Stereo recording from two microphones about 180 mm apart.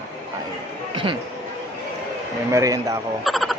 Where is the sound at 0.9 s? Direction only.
30° right (ahead or behind).